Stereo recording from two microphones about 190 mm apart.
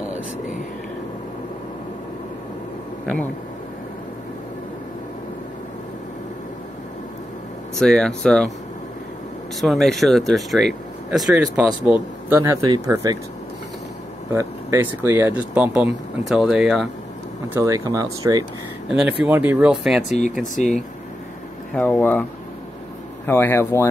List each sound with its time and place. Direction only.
7.8 s speech: 5° left (ahead or behind)
9.6 s speech: centre (ahead or behind); by 13.2 s 20° right (ahead or behind)
14.3 s speech: 15° right (ahead or behind)
17.6 s speech: 15° right (ahead or behind)
18.9 s speech: 5° right (ahead or behind)
20.1 s speech: 40° left (ahead or behind)
21.7 s speech: 10° left (ahead or behind)
23.2 s speech: 10° left (ahead or behind)